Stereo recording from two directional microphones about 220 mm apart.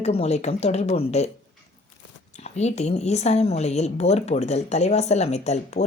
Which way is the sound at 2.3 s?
30° left (ahead or behind).